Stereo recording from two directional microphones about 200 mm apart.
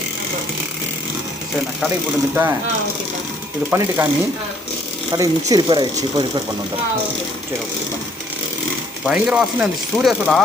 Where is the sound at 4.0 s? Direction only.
10° right (ahead or behind).